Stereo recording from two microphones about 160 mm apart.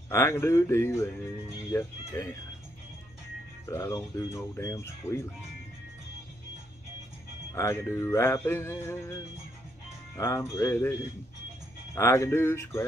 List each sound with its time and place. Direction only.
0.1 s speech: 20° left (ahead or behind)
3.6 s speech: 15° left (ahead or behind)
7.5 s speech: 15° left (ahead or behind)